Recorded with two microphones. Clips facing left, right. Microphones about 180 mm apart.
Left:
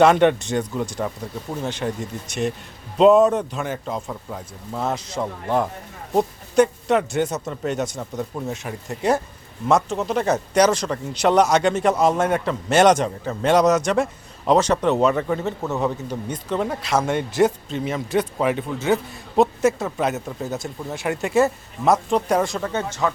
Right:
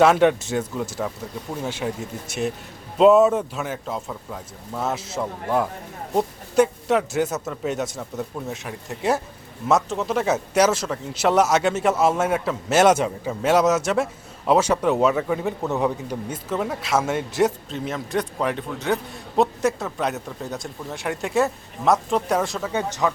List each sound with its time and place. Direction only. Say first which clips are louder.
0.0 s speech: left 1 dB; centre (ahead or behind)
22.7 s speech: even; 15° right (ahead or behind)